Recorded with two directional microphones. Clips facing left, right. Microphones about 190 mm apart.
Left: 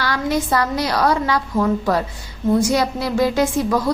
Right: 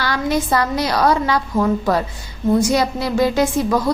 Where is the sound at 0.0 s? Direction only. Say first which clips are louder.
Right 1 dB; 25° right (ahead or behind).